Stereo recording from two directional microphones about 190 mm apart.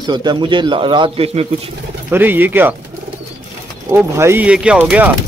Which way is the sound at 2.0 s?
10° right (ahead or behind).